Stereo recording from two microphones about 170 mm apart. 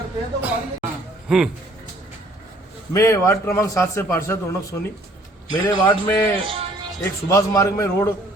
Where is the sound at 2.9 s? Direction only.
15° left (ahead or behind).